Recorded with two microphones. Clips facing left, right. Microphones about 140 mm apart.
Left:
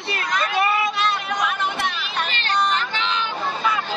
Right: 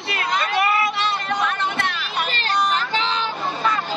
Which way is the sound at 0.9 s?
30° right (ahead or behind).